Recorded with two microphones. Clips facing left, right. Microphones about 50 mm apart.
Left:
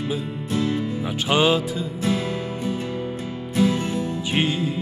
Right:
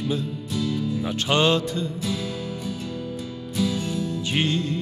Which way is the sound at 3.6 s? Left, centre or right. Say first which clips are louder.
Left 4 dB; left.